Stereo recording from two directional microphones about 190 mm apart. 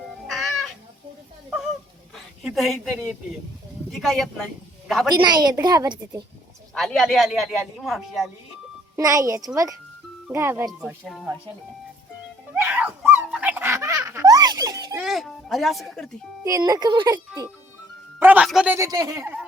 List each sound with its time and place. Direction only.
0.3 s cat: centre (ahead or behind)
2.1 s a sound: centre (ahead or behind)
3.8 s speech: centre (ahead or behind)
5.1 s a woman's voice: 20° right (ahead or behind)
6.7 s speech: centre (ahead or behind)
9.0 s a child's voice: 15° right (ahead or behind); by 11.3 s centre (ahead or behind)
12.5 s dog: 10° right (ahead or behind)
13.1 s baby laughter: 5° right (ahead or behind)
15.0 s music: centre (ahead or behind)
16.4 s a woman's voice: 20° right (ahead or behind)
18.2 s a man's voice: 5° right (ahead or behind)